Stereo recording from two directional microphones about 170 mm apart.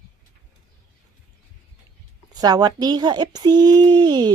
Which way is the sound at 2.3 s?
25° right (ahead or behind).